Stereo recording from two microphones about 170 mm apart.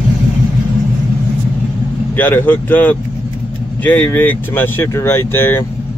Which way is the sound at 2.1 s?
10° left (ahead or behind).